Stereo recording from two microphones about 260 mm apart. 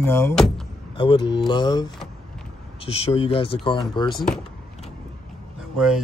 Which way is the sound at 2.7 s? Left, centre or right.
Left.